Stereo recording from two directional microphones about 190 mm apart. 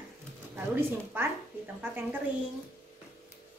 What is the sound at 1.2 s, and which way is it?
Speech, 10° right (ahead or behind).